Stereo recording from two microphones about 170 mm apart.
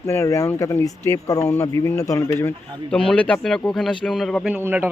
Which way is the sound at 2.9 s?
5° left (ahead or behind).